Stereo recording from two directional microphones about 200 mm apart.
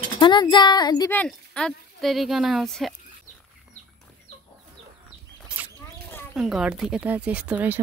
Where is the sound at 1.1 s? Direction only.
5° left (ahead or behind).